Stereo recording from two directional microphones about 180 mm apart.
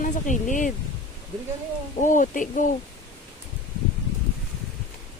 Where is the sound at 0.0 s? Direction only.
45° left (ahead or behind).